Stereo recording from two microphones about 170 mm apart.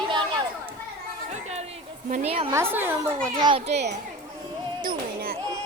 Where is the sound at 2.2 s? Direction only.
35° right (ahead or behind).